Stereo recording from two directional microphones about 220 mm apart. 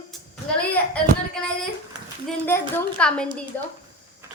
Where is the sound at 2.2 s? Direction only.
10° left (ahead or behind).